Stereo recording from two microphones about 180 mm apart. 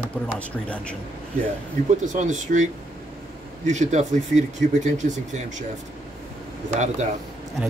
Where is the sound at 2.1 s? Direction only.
45° right (ahead or behind).